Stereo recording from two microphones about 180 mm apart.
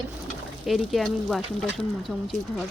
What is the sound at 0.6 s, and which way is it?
Speech, centre (ahead or behind).